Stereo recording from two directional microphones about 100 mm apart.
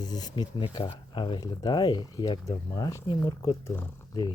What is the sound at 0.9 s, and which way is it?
Speech, 55° left (ahead or behind).